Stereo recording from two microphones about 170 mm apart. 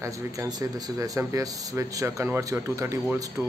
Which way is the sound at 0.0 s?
20° right (ahead or behind).